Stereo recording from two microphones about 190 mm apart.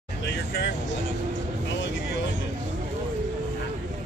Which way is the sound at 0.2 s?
65° left (ahead or behind).